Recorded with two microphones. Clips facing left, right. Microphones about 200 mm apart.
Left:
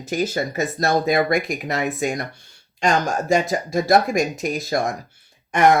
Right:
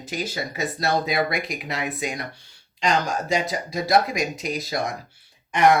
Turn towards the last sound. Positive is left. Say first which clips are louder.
# left 2 dB
turn(degrees=45)  # may be behind; listen again after turning